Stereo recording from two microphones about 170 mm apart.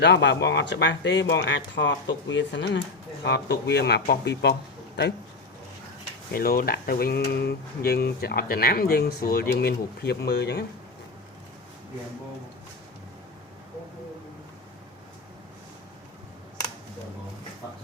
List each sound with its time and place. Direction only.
0.0 s speech: 90° left
6.3 s speech: 60° left (ahead or behind); by 10.7 s 75° left (ahead or behind)